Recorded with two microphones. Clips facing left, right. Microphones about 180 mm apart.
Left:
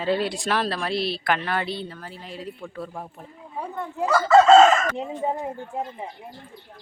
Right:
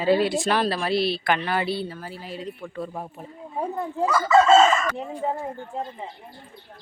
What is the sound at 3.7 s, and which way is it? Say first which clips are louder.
Speech: right 1 dB; 35° right (ahead or behind).